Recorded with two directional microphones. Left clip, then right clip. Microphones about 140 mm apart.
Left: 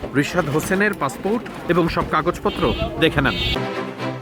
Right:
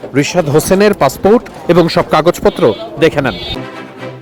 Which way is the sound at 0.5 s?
35° right (ahead or behind).